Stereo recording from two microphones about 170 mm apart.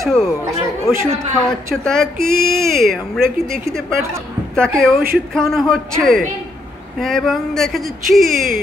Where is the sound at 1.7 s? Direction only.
5° left (ahead or behind).